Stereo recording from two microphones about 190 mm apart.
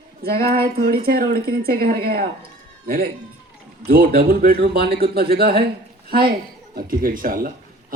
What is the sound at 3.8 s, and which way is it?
A man's voice, 55° right (ahead or behind).